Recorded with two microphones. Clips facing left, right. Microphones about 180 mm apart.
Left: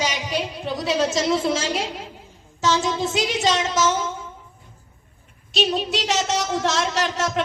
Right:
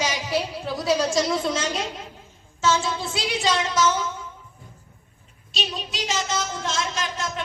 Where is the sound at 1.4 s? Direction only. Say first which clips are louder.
Left 3 dB; 30° left (ahead or behind).